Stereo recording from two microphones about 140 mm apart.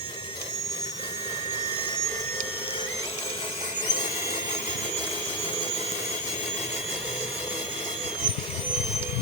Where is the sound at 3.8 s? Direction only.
35° left (ahead or behind).